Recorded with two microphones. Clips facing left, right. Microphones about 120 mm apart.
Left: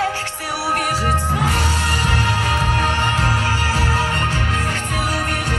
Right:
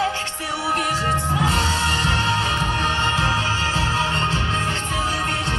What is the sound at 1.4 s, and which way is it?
Music, 20° right (ahead or behind).